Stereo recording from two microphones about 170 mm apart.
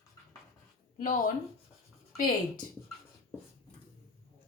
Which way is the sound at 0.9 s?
55° left (ahead or behind).